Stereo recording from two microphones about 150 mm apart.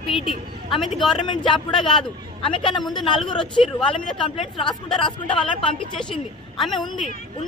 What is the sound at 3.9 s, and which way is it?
A woman's voice, 35° left (ahead or behind).